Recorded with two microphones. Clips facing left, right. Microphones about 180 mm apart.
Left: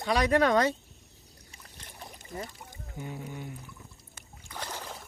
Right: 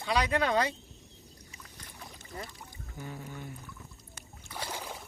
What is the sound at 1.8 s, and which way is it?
Boat, 20° left (ahead or behind).